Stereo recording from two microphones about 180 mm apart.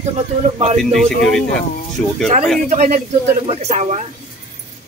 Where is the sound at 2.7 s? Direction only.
40° right (ahead or behind).